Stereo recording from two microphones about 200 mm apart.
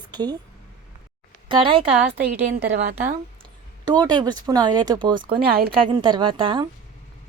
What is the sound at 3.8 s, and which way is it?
Speech, 20° right (ahead or behind).